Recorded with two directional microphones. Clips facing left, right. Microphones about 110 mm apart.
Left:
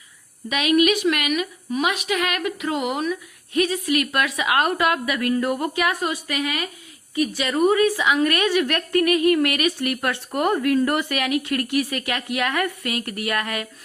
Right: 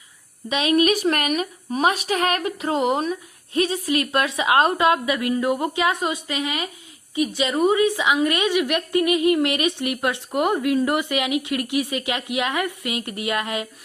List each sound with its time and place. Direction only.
0.4 s a woman's voice: 30° right (ahead or behind)